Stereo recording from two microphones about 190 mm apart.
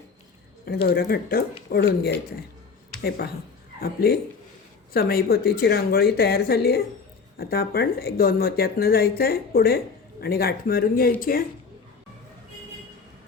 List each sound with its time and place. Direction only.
0.6 s speech: 55° left (ahead or behind)